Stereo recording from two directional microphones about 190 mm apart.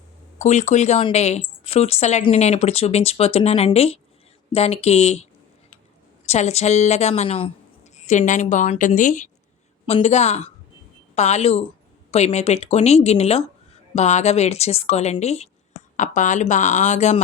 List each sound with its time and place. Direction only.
0.3 s speech: 35° left (ahead or behind)